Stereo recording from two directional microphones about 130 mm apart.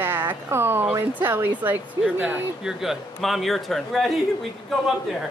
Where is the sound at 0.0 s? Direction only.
15° right (ahead or behind).